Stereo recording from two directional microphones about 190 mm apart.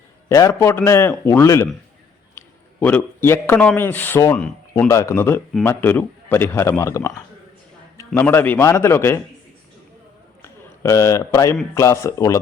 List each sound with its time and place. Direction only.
0.3 s a man's voice: 15° left (ahead or behind)
2.8 s a man's voice: 10° left (ahead or behind)
10.4 s a man's voice: 15° left (ahead or behind)